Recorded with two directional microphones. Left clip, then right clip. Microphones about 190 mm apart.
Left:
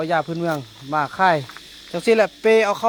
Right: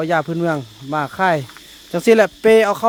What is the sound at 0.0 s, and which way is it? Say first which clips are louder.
Speech: right 3 dB; 45° right (ahead or behind).